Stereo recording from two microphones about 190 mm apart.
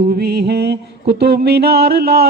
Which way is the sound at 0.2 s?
55° right (ahead or behind).